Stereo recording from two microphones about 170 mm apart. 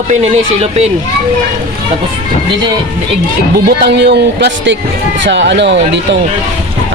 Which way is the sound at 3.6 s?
70° right (ahead or behind).